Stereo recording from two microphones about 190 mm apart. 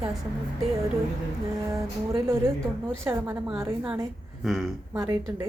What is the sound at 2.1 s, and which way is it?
A woman's voice, 15° right (ahead or behind).